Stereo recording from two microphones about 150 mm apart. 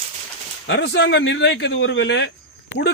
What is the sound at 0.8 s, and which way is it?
Speech, 90° left.